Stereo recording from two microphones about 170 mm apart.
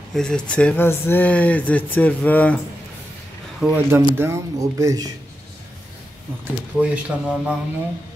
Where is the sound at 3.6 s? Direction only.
10° right (ahead or behind).